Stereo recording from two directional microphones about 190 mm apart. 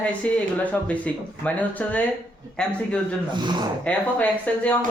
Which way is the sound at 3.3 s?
25° right (ahead or behind).